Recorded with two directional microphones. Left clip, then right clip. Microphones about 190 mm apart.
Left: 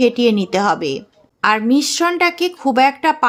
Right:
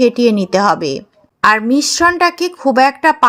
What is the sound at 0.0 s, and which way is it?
A woman's voice, 20° right (ahead or behind).